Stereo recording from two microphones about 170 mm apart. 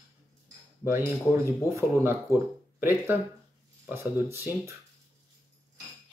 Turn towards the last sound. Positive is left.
turn(degrees=-15)  # may be behind; listen again after turning